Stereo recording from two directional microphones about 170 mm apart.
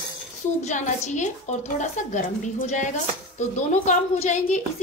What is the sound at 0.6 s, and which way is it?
A woman's voice, 45° left (ahead or behind).